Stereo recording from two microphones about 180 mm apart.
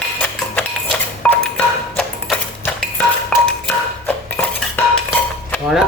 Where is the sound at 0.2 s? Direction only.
5° left (ahead or behind).